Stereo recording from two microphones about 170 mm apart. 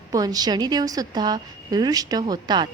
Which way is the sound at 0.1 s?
20° right (ahead or behind).